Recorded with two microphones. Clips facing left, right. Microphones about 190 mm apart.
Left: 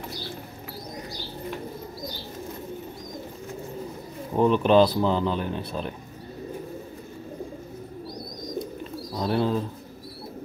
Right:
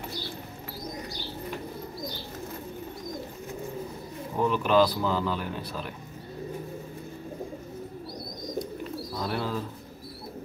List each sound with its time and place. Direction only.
4.4 s speech: 25° left (ahead or behind)
9.1 s speech: 25° left (ahead or behind)